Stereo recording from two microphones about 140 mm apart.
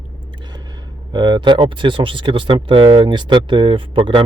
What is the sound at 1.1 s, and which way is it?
Speech, 30° right (ahead or behind).